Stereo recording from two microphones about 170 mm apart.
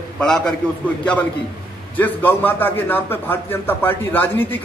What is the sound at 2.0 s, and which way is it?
A man's voice, 10° left (ahead or behind).